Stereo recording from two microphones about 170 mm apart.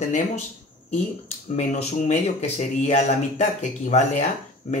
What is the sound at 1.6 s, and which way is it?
Speech, 45° left (ahead or behind).